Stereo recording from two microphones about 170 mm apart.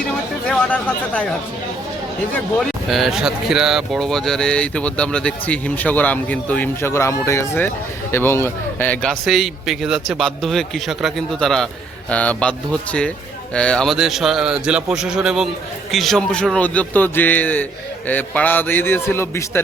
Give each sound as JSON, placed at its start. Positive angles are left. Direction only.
{"t": 0.4, "sound": "speech", "side_deg": 5}
{"t": 2.3, "sound": "a man's voice", "side_deg": 0}